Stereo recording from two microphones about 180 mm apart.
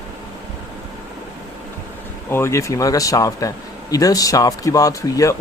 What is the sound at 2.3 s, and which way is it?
Speech, 15° left (ahead or behind).